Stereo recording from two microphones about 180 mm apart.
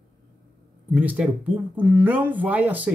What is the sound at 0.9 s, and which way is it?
Speech, 10° right (ahead or behind).